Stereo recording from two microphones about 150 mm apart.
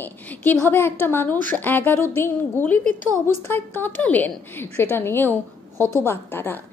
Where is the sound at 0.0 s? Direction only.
10° left (ahead or behind).